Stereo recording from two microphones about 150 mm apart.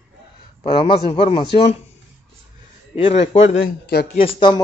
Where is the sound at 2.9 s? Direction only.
40° left (ahead or behind).